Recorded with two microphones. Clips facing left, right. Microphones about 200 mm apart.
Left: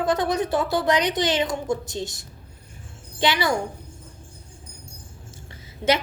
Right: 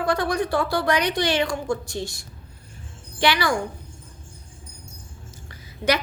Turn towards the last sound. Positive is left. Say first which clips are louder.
# left 1 dB
turn(degrees=25)  # may be behind; listen again after turning